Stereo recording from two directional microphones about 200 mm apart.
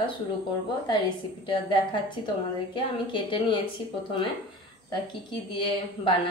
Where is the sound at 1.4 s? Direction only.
25° left (ahead or behind).